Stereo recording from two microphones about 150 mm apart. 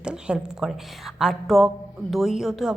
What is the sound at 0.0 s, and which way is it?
Speech, 5° right (ahead or behind).